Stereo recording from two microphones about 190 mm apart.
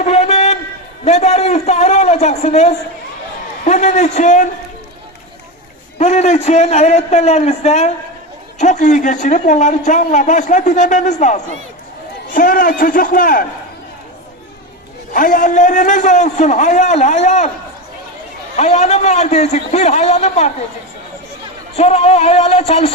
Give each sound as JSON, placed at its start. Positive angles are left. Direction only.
{"t": 0.0, "sound": "a sound", "side_deg": 35}
{"t": 1.0, "sound": "a man's voice", "side_deg": 35}
{"t": 6.0, "sound": "a man's voice", "side_deg": 35}
{"t": 15.1, "sound": "a man's voice", "side_deg": 45}
{"t": 18.5, "sound": "a man's voice", "side_deg": 35}
{"t": 21.8, "sound": "a man's voice", "side_deg": 35}